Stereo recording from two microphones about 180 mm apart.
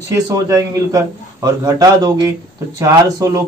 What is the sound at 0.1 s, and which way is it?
A man's voice, 20° right (ahead or behind).